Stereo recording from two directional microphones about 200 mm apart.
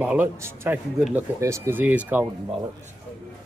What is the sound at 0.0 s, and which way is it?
A man's voice, 10° right (ahead or behind).